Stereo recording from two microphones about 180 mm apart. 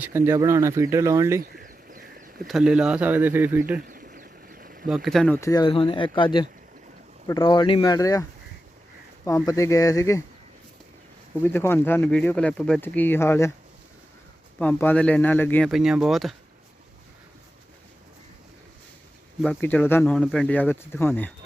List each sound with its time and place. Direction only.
0.0 s speech: 10° right (ahead or behind)
1.4 s a sound: 50° right (ahead or behind)
2.5 s speech: 5° right (ahead or behind)
3.8 s a sound: 55° right (ahead or behind)
4.9 s speech: centre (ahead or behind)
5.4 s speech: 20° left (ahead or behind)
11.4 s speech: 10° left (ahead or behind)
14.6 s speech: 10° left (ahead or behind)
19.4 s speech: 5° left (ahead or behind)